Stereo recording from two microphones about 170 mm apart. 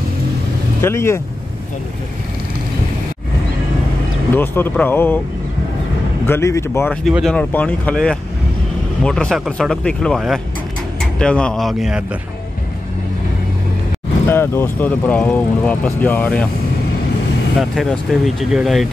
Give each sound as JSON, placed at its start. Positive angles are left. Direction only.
{"t": 0.7, "sound": "speech", "side_deg": 15}
{"t": 4.4, "sound": "speech", "side_deg": 10}
{"t": 6.2, "sound": "speech", "side_deg": 15}
{"t": 7.1, "sound": "speech", "side_deg": 0}
{"t": 14.3, "sound": "speech", "side_deg": 15}
{"t": 17.6, "sound": "speech", "side_deg": 0}